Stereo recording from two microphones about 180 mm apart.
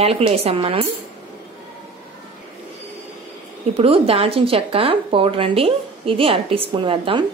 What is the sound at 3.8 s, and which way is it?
Speech, 30° right (ahead or behind).